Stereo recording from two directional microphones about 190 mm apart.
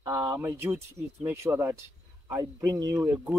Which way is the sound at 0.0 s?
10° right (ahead or behind).